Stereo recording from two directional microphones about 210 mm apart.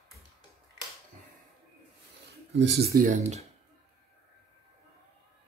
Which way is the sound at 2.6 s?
55° right (ahead or behind).